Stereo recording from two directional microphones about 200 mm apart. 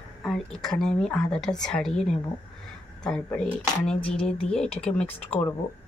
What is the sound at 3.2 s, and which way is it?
A woman's voice, 5° left (ahead or behind).